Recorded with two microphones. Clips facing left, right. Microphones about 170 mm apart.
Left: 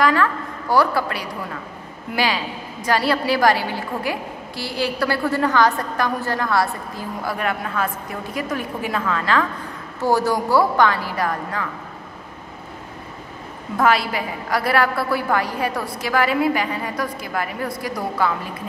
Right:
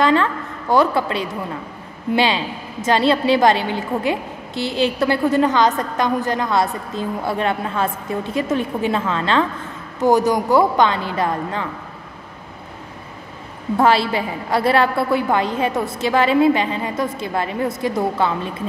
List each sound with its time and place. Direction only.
0.0 s a woman's voice: 25° right (ahead or behind)
13.7 s a woman's voice: 30° right (ahead or behind)